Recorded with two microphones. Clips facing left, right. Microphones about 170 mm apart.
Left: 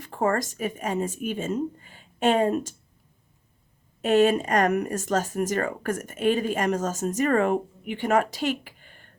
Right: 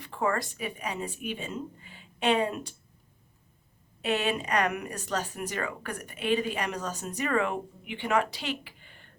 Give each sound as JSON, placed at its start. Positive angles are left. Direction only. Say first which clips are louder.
{"t": 0.0, "sound": "speech", "louder": "left 4 dB", "side_deg": 45}
{"t": 4.0, "sound": "speech", "louder": "left 9 dB", "side_deg": 45}